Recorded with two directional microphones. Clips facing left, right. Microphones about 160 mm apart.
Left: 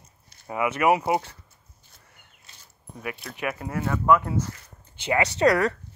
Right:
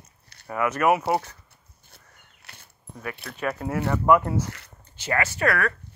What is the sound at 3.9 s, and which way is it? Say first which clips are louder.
Speech: right 1 dB; 15° right (ahead or behind).